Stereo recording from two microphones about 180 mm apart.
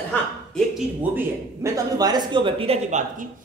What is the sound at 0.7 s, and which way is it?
A man's voice, 15° right (ahead or behind).